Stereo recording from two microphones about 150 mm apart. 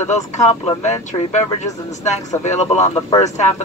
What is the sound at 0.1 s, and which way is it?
Speech, 50° left (ahead or behind).